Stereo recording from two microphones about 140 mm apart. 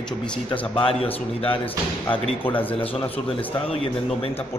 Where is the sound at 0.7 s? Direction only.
40° left (ahead or behind).